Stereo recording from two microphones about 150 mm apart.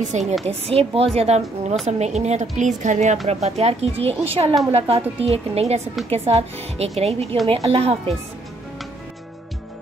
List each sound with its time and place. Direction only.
0.0 s speech: 50° right (ahead or behind)